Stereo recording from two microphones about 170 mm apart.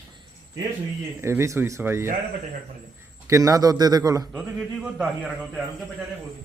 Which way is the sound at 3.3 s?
20° right (ahead or behind).